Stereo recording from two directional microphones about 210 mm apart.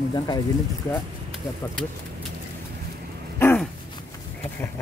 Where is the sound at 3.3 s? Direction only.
10° left (ahead or behind).